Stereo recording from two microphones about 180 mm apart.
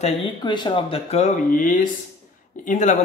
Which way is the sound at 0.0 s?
25° left (ahead or behind).